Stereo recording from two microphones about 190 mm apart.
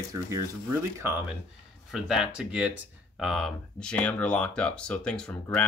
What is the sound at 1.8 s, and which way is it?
Speech, centre (ahead or behind).